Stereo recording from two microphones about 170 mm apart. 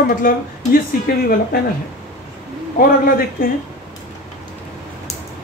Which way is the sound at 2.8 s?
55° left (ahead or behind).